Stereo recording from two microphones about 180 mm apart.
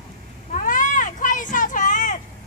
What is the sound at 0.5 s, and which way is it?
Cat, 45° left (ahead or behind).